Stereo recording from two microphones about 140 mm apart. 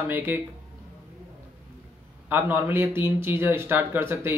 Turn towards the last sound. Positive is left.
turn(degrees=-15)  # may be behind; listen again after turning